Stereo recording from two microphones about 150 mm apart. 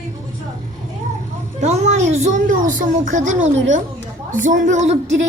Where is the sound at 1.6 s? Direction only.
50° right (ahead or behind).